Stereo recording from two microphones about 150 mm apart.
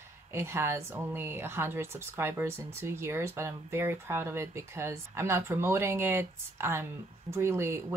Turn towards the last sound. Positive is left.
turn(degrees=-15)  # may be behind; listen again after turning